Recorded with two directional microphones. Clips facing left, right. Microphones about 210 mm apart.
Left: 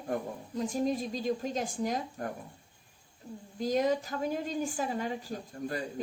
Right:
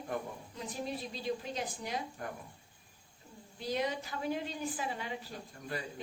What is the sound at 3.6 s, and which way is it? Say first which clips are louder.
A woman's voice: left 7 dB; 45° left (ahead or behind).